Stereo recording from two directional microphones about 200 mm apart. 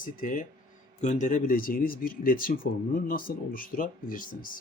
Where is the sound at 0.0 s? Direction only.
40° left (ahead or behind).